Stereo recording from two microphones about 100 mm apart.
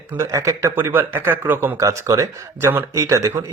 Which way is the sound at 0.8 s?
20° right (ahead or behind).